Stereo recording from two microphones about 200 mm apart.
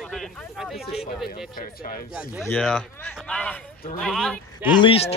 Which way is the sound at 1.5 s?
45° left (ahead or behind).